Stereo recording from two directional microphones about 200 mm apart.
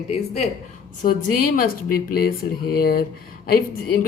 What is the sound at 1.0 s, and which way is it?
Speech, 40° left (ahead or behind).